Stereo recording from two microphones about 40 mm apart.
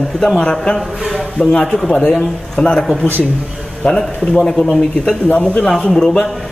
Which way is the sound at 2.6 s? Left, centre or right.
Left.